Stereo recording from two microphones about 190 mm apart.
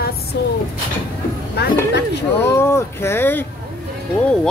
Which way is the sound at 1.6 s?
60° left (ahead or behind).